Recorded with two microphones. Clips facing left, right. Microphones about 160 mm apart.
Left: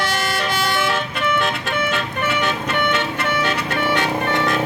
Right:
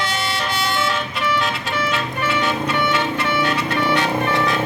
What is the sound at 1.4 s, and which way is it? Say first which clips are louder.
Vehicle: left 1 dB; 55° left (ahead or behind).